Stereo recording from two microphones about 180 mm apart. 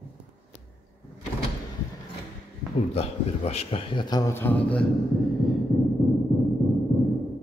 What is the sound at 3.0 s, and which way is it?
A man's voice, 35° left (ahead or behind).